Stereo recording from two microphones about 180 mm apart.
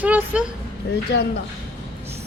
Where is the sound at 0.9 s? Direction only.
70° left (ahead or behind).